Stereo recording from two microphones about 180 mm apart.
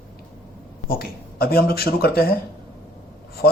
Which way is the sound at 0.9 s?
55° left (ahead or behind).